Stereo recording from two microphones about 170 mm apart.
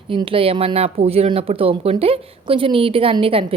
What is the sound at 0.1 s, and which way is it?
Speech, 30° right (ahead or behind).